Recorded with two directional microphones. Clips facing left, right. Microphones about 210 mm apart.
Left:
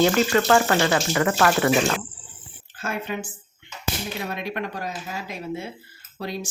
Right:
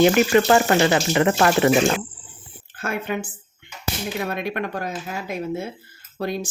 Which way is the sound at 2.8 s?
55° right (ahead or behind).